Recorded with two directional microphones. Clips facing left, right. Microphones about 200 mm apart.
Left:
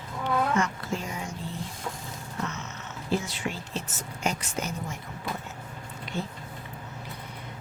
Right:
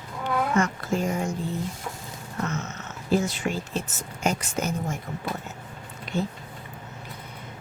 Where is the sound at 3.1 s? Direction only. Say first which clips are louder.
Right 9 dB; 45° right (ahead or behind).